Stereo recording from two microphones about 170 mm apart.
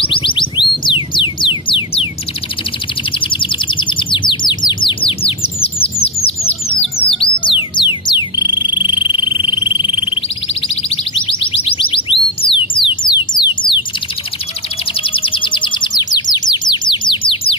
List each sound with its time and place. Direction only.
0.0 s music: 30° left (ahead or behind)
3.1 s bird: 30° left (ahead or behind)
6.0 s music: 35° left (ahead or behind)
10.5 s a sound: 35° left (ahead or behind)
15.0 s chirp: 30° left (ahead or behind)